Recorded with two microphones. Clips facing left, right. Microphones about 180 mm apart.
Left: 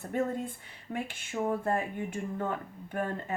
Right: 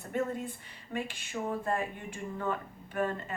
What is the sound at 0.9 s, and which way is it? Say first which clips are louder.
Speech: left 2 dB; 55° left (ahead or behind).